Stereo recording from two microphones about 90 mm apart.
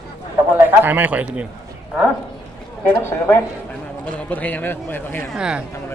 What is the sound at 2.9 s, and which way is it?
Speech, 30° left (ahead or behind).